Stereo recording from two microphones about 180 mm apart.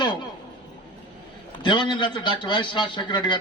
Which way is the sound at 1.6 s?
25° left (ahead or behind).